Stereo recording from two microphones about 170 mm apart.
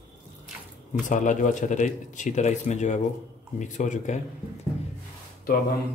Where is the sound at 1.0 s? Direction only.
50° left (ahead or behind).